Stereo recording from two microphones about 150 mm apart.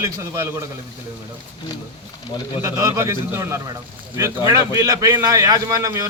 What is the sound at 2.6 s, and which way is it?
A man's voice, 20° right (ahead or behind).